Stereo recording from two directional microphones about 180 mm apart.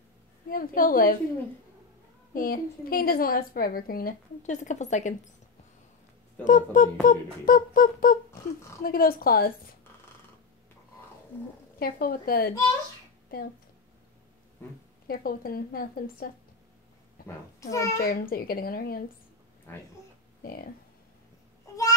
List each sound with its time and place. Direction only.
0.5 s a woman's voice: 50° left (ahead or behind)
2.3 s a woman's voice: 50° left (ahead or behind)
6.4 s a woman's voice: 45° left (ahead or behind)
11.8 s speech: 55° left (ahead or behind)
15.0 s a woman's voice: 55° left (ahead or behind)
17.6 s a child's voice: 20° left (ahead or behind)
18.0 s speech: 55° left (ahead or behind)
19.7 s a child's voice: 10° left (ahead or behind)